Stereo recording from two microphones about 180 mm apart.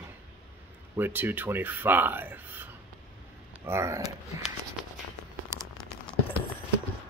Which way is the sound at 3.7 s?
15° right (ahead or behind).